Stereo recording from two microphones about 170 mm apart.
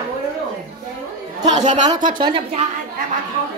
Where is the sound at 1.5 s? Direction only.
40° right (ahead or behind).